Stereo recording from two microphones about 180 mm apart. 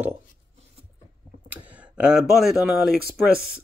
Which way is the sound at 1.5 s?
10° right (ahead or behind).